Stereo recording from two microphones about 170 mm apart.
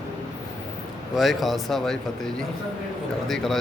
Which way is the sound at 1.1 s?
Centre (ahead or behind).